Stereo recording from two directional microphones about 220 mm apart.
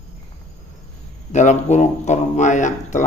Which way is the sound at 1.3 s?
35° left (ahead or behind).